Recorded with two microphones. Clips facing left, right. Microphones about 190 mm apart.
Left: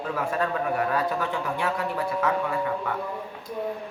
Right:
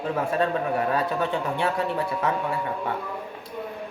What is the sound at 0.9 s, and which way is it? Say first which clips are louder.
Speech: right 2 dB; 25° right (ahead or behind).